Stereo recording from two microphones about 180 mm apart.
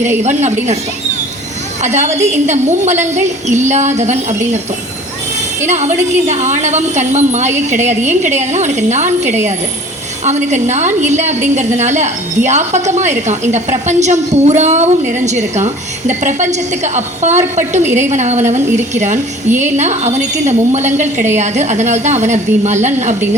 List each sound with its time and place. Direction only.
0.0 s a woman's voice: 40° right (ahead or behind)
1.8 s a woman's voice: 40° right (ahead or behind)
5.6 s a woman's voice: 40° right (ahead or behind)
7.8 s a woman's voice: 15° right (ahead or behind)
8.5 s a woman's voice: 40° right (ahead or behind)
19.5 s a woman's voice: 15° right (ahead or behind)
19.7 s a woman's voice: 40° right (ahead or behind)